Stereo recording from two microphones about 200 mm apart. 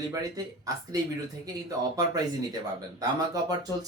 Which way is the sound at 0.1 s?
15° right (ahead or behind).